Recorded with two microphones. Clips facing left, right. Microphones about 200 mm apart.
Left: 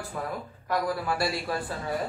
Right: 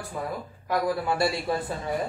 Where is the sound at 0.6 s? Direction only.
Centre (ahead or behind).